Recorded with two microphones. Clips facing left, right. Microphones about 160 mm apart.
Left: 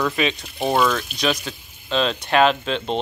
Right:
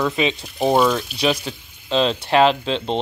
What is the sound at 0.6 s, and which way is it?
Speech, 10° right (ahead or behind).